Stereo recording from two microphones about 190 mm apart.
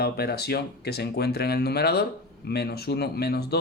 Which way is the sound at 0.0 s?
55° left (ahead or behind).